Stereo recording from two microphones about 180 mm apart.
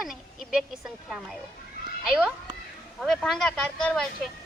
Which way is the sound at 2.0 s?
5° right (ahead or behind).